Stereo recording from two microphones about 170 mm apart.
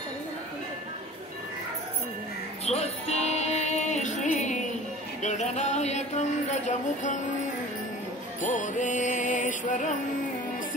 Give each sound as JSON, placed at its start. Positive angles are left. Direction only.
{"t": 2.6, "sound": "music", "side_deg": 40}
{"t": 5.2, "sound": "speech", "side_deg": 45}
{"t": 8.5, "sound": "speech", "side_deg": 45}